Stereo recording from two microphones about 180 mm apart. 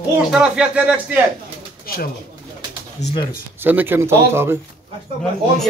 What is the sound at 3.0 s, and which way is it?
Speech, 35° left (ahead or behind).